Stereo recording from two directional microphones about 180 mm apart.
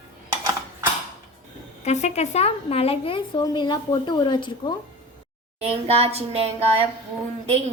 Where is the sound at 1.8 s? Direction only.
40° left (ahead or behind).